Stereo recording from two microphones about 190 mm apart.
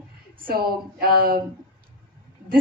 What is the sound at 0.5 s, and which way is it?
Speech, 50° right (ahead or behind).